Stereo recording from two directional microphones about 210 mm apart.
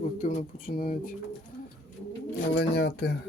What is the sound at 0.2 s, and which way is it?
Speech, 35° left (ahead or behind).